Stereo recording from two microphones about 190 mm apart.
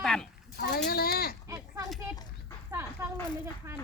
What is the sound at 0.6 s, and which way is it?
Speech, 55° left (ahead or behind).